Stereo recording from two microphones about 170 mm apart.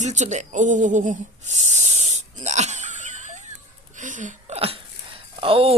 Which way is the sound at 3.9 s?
50° right (ahead or behind).